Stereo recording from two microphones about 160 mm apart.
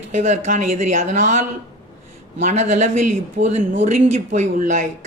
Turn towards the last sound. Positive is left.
turn(degrees=-50)  # may be behind; listen again after turning